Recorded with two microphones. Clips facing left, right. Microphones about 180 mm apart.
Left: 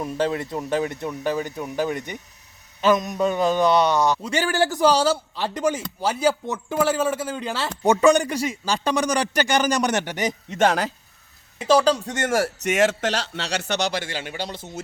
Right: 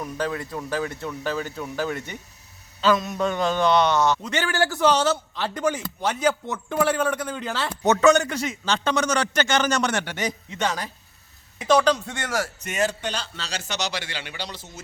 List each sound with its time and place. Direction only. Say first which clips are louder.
0.0 s a man's voice: left 4 dB; 25° left (ahead or behind)
4.3 s a man's voice: left 3 dB; 35° left (ahead or behind)
4.5 s a man's voice: left 2 dB; 15° left (ahead or behind)
4.9 s a man's voice: left 1 dB; 35° left (ahead or behind)
5.1 s a man's voice: left 1 dB; 10° left (ahead or behind)
5.5 s speech: left 2 dB; 20° left (ahead or behind)
6.2 s a man's voice: left 2 dB; 10° left (ahead or behind)
10.5 s a man's voice: left 9 dB; 50° left (ahead or behind)
11.9 s a man's voice: left 2 dB; 40° left (ahead or behind)
12.5 s speech: left 6 dB; 85° left; by 14.7 s 50° left (ahead or behind)